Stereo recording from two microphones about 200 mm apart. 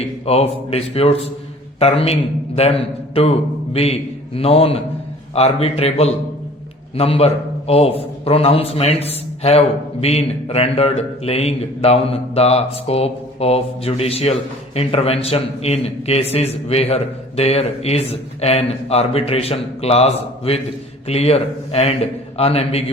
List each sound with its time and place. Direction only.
0.0 s a man's voice: 30° left (ahead or behind)